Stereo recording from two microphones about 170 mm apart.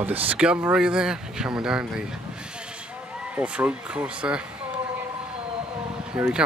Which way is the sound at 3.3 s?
5° right (ahead or behind).